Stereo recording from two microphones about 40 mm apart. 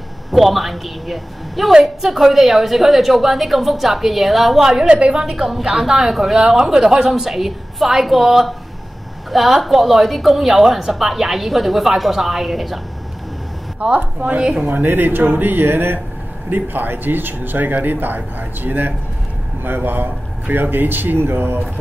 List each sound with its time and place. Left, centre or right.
0.3 s a woman's voice: centre
1.7 s a woman's voice: centre
4.8 s a woman's voice: right
5.2 s speech: centre
9.6 s a woman's voice: centre
13.9 s a woman's voice: right
14.7 s speech: right
16.4 s a man's voice: right